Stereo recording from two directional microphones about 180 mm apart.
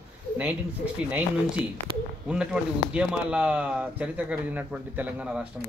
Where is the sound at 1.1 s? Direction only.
5° right (ahead or behind).